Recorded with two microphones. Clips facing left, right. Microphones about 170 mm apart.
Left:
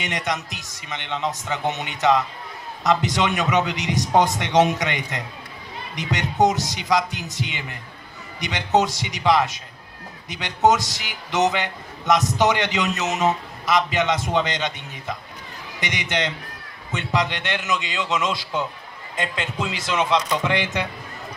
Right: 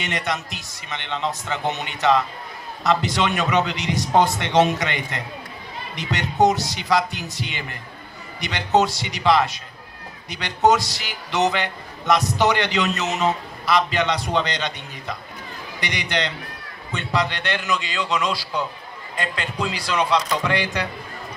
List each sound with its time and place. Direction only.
0.0 s a man's voice: 15° left (ahead or behind)